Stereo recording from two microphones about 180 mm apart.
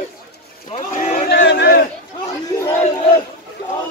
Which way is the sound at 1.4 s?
65° left (ahead or behind).